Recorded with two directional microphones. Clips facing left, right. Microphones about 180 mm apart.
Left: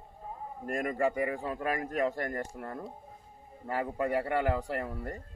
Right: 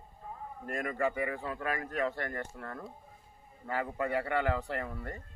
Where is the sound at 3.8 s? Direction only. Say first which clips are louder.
Left 2 dB; 35° left (ahead or behind).